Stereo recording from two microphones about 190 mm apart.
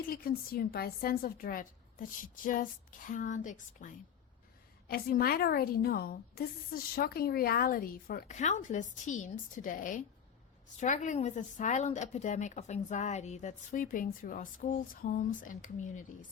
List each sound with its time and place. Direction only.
0.1 s a woman's voice: 50° left (ahead or behind)